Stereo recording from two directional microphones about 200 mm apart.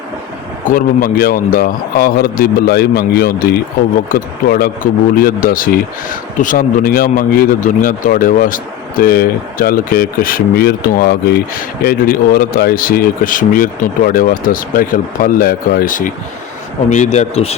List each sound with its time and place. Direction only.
0.7 s a man's voice: 45° left (ahead or behind); by 17.6 s 30° left (ahead or behind)